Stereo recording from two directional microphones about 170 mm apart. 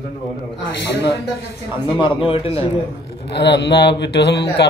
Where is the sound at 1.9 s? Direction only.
30° left (ahead or behind).